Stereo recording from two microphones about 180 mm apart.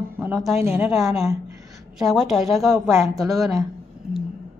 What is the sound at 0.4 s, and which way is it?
Speech, 15° right (ahead or behind).